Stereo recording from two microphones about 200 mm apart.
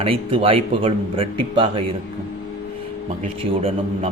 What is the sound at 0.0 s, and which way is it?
Speech, 25° right (ahead or behind).